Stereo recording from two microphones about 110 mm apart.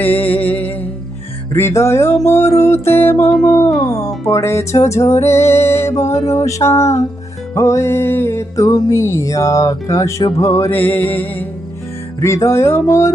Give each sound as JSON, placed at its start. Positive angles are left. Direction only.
{"t": 0.0, "sound": "music", "side_deg": 15}
{"t": 2.1, "sound": "music", "side_deg": 90}
{"t": 2.4, "sound": "music", "side_deg": 25}